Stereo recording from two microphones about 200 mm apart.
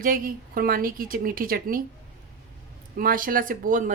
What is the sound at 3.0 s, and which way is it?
Speech, 45° right (ahead or behind).